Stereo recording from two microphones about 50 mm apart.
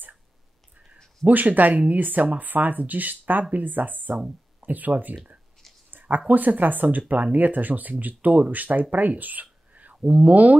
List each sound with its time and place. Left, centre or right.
1.2 s speech: right
8.9 s a sound: right
10.0 s speech: right